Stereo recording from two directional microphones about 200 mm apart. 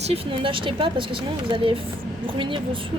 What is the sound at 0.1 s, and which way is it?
Speech, 25° right (ahead or behind).